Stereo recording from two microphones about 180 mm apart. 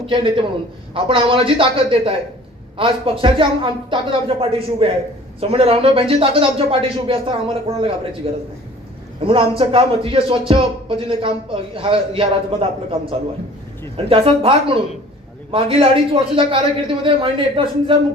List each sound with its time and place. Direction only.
0.0 s speech: 30° right (ahead or behind)